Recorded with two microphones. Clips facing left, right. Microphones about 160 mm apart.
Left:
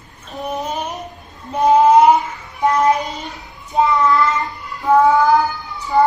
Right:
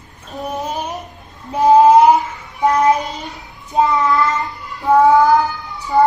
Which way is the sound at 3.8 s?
Centre (ahead or behind).